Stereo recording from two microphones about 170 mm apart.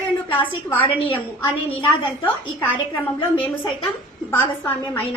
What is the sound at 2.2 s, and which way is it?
A woman's voice, 30° left (ahead or behind).